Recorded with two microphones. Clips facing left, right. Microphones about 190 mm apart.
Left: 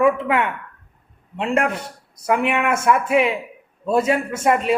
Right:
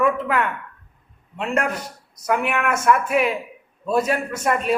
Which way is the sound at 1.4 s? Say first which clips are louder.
Left 3 dB; 25° left (ahead or behind).